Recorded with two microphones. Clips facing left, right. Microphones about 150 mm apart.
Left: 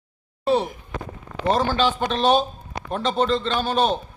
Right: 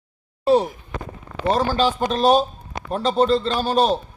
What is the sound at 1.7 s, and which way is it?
A man's voice, 40° right (ahead or behind).